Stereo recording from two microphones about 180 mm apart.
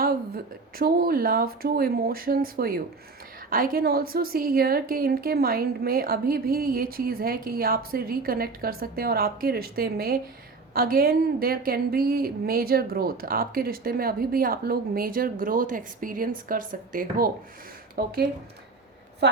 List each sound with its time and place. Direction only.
0.0 s a woman's voice: 55° right (ahead or behind)
19.2 s a woman's voice: 70° right (ahead or behind)